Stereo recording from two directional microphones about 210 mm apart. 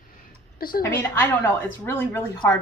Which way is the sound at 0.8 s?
10° left (ahead or behind).